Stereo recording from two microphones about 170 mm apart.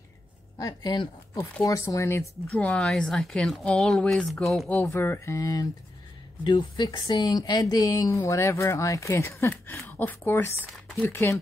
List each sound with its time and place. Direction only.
0.6 s speech: 20° left (ahead or behind); by 4.7 s centre (ahead or behind)
4.7 s speech: 10° left (ahead or behind)